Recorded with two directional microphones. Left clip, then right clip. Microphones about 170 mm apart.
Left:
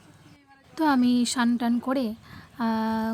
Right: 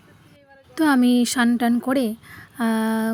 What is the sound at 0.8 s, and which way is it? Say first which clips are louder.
Speech: right 4 dB; 15° right (ahead or behind).